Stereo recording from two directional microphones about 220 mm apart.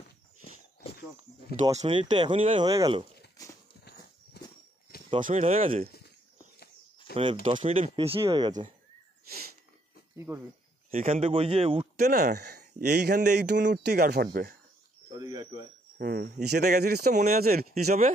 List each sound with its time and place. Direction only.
1.8 s speech: 25° right (ahead or behind)
3.4 s horse: 15° left (ahead or behind)
3.8 s horse: 45° left (ahead or behind)
5.2 s speech: 30° right (ahead or behind)
7.1 s speech: 45° left (ahead or behind)
7.4 s speech: 30° right (ahead or behind)
10.1 s speech: 10° right (ahead or behind)
10.9 s speech: 30° right (ahead or behind)
12.4 s a sound: 50° right (ahead or behind)
12.7 s speech: 35° right (ahead or behind)
13.0 s speech: 50° right (ahead or behind)
15.1 s speech: 20° right (ahead or behind)
16.0 s speech: 45° right (ahead or behind)